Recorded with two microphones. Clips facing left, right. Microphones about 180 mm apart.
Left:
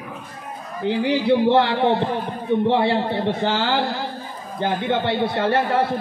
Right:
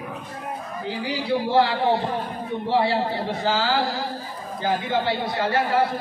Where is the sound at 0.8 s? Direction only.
65° left (ahead or behind).